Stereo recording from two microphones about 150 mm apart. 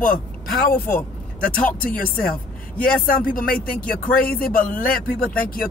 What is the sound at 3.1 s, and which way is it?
Speech, 70° left (ahead or behind).